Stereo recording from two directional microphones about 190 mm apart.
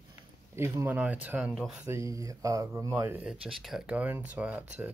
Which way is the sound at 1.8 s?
15° right (ahead or behind).